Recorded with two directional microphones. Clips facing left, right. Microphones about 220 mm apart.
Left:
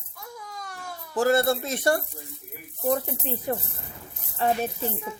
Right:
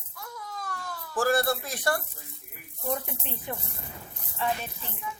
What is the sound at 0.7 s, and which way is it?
Speech, 15° left (ahead or behind).